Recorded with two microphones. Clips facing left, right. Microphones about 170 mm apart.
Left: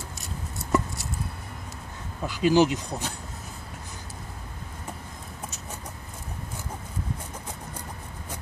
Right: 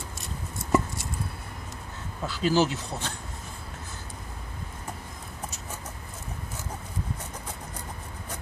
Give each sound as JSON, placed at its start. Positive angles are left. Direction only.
{"t": 0.6, "sound": "chopping", "side_deg": 0}
{"t": 2.2, "sound": "speech", "side_deg": 15}